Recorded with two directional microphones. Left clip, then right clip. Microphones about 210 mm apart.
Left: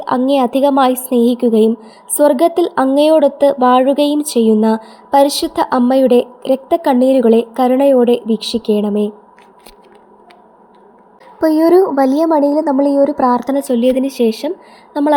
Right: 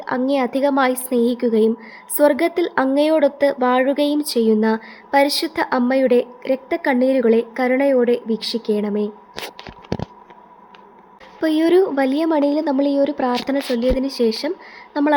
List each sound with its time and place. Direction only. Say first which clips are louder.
0.0 s a woman's voice: left 6 dB; 15° left (ahead or behind)
11.3 s a woman's voice: left 6 dB; 10° left (ahead or behind)